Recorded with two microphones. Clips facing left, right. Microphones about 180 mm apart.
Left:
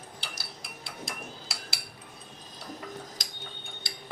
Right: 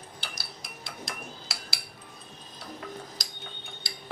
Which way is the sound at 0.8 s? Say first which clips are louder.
Even; centre (ahead or behind).